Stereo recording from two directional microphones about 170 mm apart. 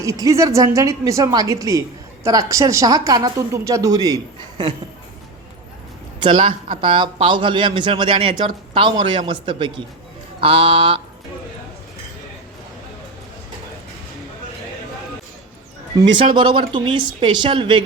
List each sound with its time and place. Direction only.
0.0 s a woman's voice: 20° right (ahead or behind)
6.2 s a woman's voice: 30° right (ahead or behind)
16.1 s a woman's voice: 30° right (ahead or behind)